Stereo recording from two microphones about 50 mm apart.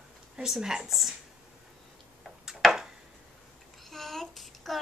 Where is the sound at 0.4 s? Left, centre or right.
Centre.